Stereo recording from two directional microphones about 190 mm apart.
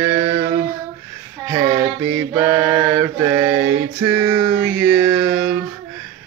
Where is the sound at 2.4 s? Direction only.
15° right (ahead or behind).